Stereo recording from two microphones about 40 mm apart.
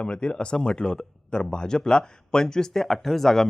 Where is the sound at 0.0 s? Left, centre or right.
Left.